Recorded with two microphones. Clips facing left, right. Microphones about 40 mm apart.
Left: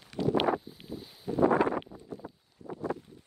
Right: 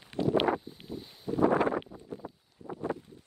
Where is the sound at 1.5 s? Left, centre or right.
Right.